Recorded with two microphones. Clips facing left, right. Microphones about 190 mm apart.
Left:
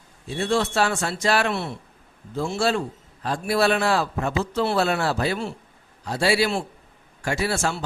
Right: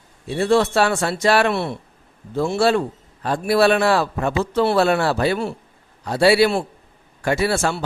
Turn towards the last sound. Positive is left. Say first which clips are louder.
# right 5 dB
turn(degrees=-65)  # may be behind; listen again after turning